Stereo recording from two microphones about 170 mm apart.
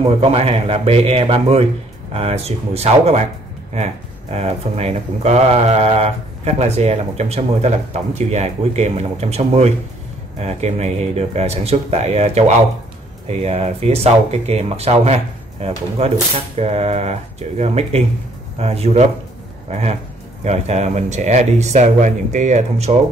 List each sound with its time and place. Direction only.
0.0 s speech: 35° right (ahead or behind)